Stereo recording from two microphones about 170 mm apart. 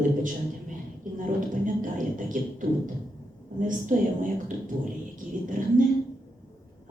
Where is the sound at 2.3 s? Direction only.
50° right (ahead or behind).